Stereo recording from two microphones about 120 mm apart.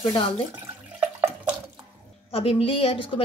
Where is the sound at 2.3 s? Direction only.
55° left (ahead or behind).